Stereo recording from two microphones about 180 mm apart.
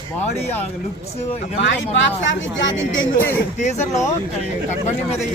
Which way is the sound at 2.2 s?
90° left.